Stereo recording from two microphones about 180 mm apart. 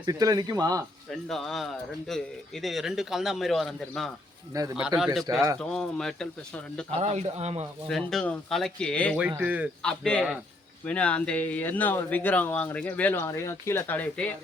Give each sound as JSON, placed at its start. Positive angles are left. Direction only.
{"t": 0.0, "sound": "speech", "side_deg": -20}
{"t": 1.3, "sound": "a man's voice", "side_deg": 0}
{"t": 4.5, "sound": "speech", "side_deg": -20}
{"t": 4.9, "sound": "a man's voice", "side_deg": -5}
{"t": 7.0, "sound": "speech", "side_deg": -40}
{"t": 7.9, "sound": "a man's voice", "side_deg": 0}
{"t": 9.3, "sound": "speech", "side_deg": -10}
{"t": 9.8, "sound": "a man's voice", "side_deg": 5}